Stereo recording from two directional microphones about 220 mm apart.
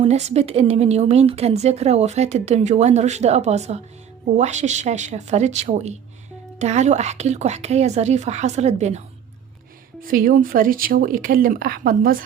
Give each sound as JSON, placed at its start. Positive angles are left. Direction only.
{"t": 0.0, "sound": "a woman's voice", "side_deg": -30}
{"t": 10.0, "sound": "speech", "side_deg": -40}